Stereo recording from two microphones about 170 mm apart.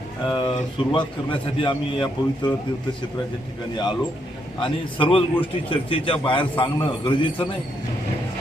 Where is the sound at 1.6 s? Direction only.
35° left (ahead or behind).